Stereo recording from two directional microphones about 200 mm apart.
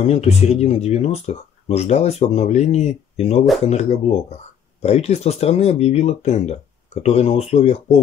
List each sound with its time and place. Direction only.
0.0 s speech: 30° left (ahead or behind)